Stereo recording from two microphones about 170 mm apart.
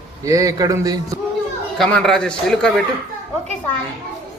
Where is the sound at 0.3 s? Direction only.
20° right (ahead or behind).